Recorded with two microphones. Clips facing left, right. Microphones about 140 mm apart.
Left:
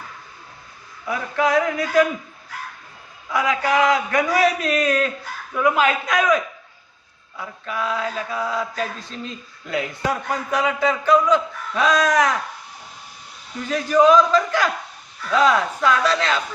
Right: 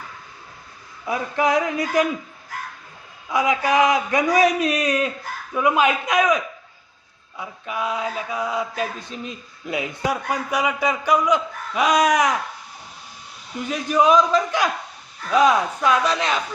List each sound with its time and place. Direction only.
1.0 s a man's voice: 20° right (ahead or behind)
3.3 s a man's voice: 20° right (ahead or behind)
7.6 s mantra: 15° right (ahead or behind)
13.7 s mantra: 15° right (ahead or behind)